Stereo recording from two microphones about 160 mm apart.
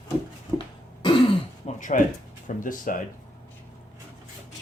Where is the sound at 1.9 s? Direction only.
55° left (ahead or behind).